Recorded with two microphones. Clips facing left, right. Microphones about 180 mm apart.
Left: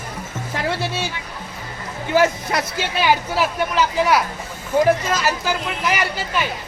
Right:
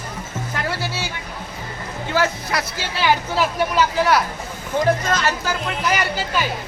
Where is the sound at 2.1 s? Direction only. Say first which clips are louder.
Left 4 dB; 20° left (ahead or behind).